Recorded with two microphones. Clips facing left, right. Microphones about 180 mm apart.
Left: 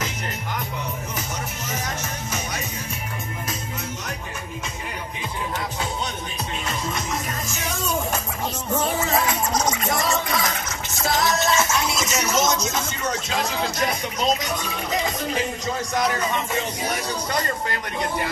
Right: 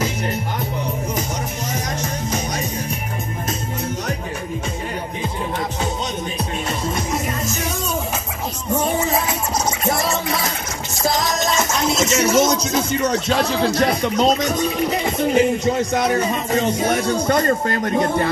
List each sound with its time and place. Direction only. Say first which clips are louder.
1.7 s music: right 4 dB; 15° right (ahead or behind)
8.7 s music: right 3 dB; 20° right (ahead or behind)
11.2 s music: right 1 dB; 15° right (ahead or behind)
12.0 s a sound: right 10 dB; 30° right (ahead or behind)
13.4 s music: right 6 dB; 35° right (ahead or behind)
13.8 s speech: right 7 dB; 60° right (ahead or behind)
14.9 s speech: right 6 dB; 30° right (ahead or behind); by 18.3 s 50° right (ahead or behind)